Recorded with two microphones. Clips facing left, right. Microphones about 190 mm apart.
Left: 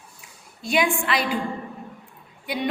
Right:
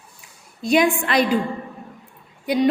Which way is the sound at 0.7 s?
40° right (ahead or behind).